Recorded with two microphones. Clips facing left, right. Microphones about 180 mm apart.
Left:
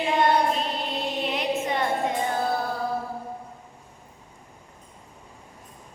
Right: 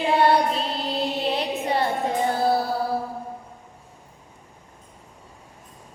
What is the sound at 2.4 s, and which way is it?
Mantra, 35° right (ahead or behind).